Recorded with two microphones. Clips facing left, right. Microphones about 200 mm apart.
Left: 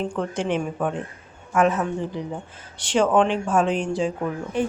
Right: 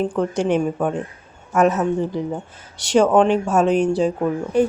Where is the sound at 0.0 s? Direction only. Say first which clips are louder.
Right 5 dB; 45° right (ahead or behind).